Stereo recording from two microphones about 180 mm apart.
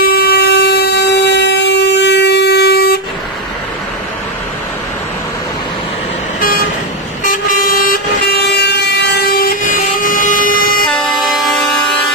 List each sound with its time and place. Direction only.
0.0 s train: 60° left (ahead or behind)
7.2 s vehicle: 50° left (ahead or behind)
10.9 s vehicle: centre (ahead or behind)